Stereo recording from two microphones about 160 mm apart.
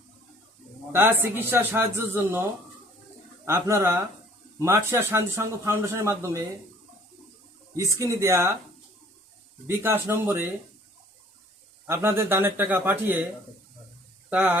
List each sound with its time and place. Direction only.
0.9 s speech: 15° right (ahead or behind)
3.4 s speech: 15° right (ahead or behind)
7.8 s speech: 20° right (ahead or behind)
9.6 s speech: 15° right (ahead or behind)
11.9 s speech: 15° right (ahead or behind)
14.3 s speech: 10° right (ahead or behind)